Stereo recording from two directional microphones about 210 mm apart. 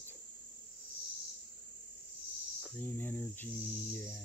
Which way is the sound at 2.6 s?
10° left (ahead or behind).